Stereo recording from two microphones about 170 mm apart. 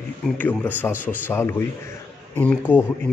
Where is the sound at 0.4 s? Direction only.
10° left (ahead or behind).